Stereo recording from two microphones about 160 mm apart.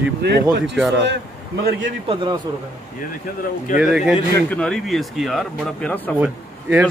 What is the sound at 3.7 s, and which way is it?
Speech, 5° right (ahead or behind).